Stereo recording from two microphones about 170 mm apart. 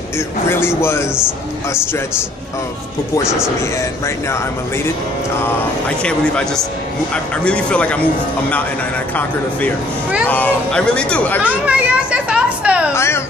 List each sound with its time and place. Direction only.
0.5 s speech: 15° left (ahead or behind)
3.3 s speech: 5° right (ahead or behind)
5.4 s speech: 5° left (ahead or behind)
10.2 s speech: 10° left (ahead or behind)
11.4 s children playing: 10° right (ahead or behind)
12.9 s speech: 15° left (ahead or behind)